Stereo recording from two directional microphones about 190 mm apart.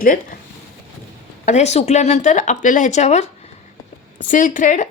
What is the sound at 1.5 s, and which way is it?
Speech, 35° left (ahead or behind).